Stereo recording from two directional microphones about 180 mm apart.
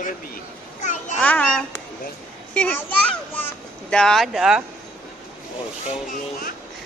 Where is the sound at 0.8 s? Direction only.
45° left (ahead or behind).